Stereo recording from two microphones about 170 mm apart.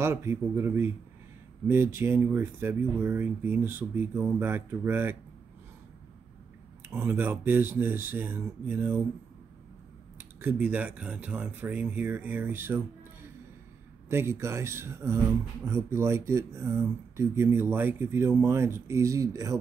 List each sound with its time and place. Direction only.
0.0 s speech: 15° right (ahead or behind)
6.9 s speech: 10° right (ahead or behind)
10.1 s speech: 10° right (ahead or behind)